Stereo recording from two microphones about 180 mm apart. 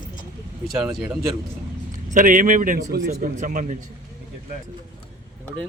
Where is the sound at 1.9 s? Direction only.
45° right (ahead or behind).